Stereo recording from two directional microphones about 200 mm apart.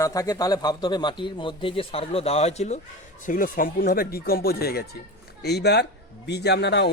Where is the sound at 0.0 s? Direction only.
15° left (ahead or behind).